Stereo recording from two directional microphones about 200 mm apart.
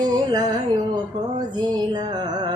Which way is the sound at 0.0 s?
20° right (ahead or behind).